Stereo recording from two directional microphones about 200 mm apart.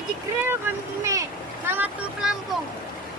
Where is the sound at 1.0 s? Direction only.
15° right (ahead or behind).